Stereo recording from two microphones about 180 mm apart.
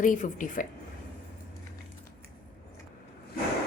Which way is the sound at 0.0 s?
45° left (ahead or behind).